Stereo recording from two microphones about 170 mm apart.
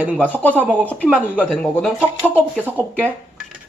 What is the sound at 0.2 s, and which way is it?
Speech, 10° left (ahead or behind).